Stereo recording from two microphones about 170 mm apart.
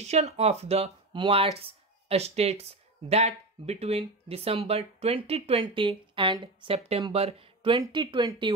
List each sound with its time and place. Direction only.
0.0 s speech: 40° right (ahead or behind)